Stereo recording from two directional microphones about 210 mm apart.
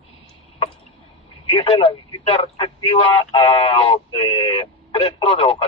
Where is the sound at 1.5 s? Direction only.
25° left (ahead or behind).